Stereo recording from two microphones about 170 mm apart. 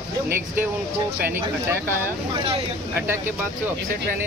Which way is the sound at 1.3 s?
15° right (ahead or behind).